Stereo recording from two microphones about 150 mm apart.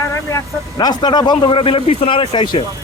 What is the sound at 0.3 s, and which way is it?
Speech, 25° left (ahead or behind).